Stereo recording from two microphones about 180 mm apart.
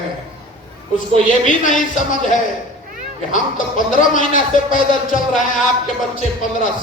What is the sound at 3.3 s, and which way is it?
Speech, 45° left (ahead or behind).